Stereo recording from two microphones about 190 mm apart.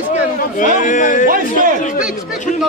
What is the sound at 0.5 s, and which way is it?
Speech, 40° left (ahead or behind).